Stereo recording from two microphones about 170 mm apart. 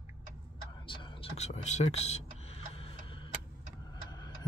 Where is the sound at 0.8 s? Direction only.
30° left (ahead or behind).